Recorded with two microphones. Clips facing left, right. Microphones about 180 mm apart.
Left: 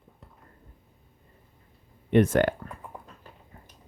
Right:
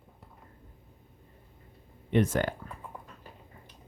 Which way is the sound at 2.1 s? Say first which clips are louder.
Left 6 dB; 65° left (ahead or behind).